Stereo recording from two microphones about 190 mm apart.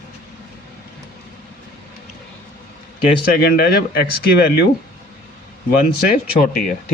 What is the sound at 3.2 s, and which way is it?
Speech, 55° left (ahead or behind).